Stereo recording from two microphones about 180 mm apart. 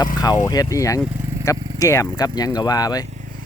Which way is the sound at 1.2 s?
15° right (ahead or behind).